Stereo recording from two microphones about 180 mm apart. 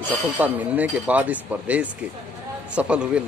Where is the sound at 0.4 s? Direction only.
10° right (ahead or behind).